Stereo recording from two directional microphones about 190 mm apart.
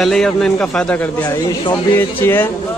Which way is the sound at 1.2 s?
20° left (ahead or behind).